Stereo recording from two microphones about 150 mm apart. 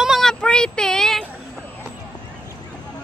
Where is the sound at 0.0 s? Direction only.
Centre (ahead or behind).